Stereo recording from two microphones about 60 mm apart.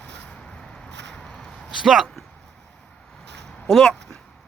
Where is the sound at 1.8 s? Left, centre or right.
Centre.